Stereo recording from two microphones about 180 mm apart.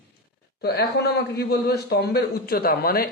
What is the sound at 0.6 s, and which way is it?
A man's voice, 65° left (ahead or behind).